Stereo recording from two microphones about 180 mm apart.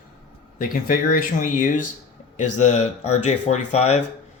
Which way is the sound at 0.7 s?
50° left (ahead or behind).